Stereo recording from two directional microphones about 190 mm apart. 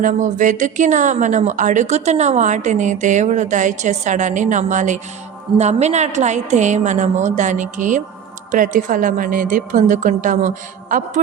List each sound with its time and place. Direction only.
0.0 s a woman's voice: 40° right (ahead or behind)